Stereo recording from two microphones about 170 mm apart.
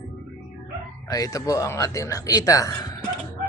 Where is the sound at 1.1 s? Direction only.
20° left (ahead or behind).